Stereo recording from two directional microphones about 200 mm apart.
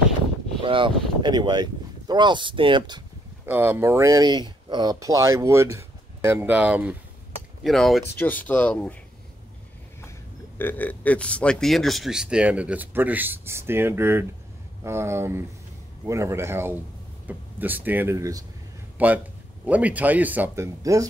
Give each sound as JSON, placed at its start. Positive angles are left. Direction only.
{"t": 0.6, "sound": "speech", "side_deg": -25}
{"t": 3.4, "sound": "speech", "side_deg": -10}
{"t": 10.6, "sound": "speech", "side_deg": 10}